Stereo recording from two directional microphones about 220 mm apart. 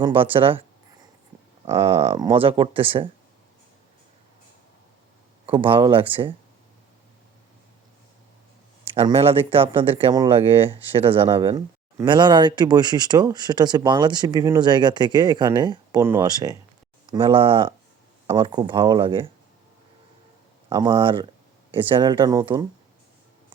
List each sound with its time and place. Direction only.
0.0 s speech: 25° right (ahead or behind)
1.6 s speech: 25° right (ahead or behind)
5.5 s speech: 25° right (ahead or behind)
9.0 s speech: 25° right (ahead or behind)
20.7 s speech: 20° right (ahead or behind)